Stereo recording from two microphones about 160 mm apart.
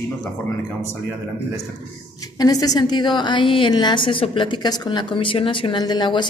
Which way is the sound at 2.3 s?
25° left (ahead or behind).